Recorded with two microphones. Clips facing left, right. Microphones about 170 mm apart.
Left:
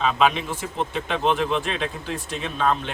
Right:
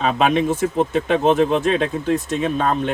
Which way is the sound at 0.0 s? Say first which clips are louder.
Right 4 dB; 45° right (ahead or behind).